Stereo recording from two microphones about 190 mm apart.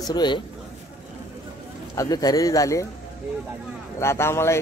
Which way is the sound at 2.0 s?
20° left (ahead or behind).